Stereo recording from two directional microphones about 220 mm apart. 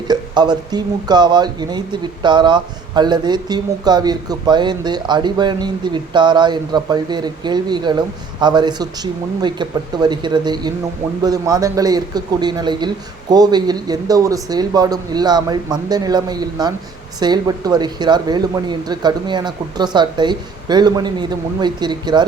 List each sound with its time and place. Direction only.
0.1 s speech: 20° right (ahead or behind)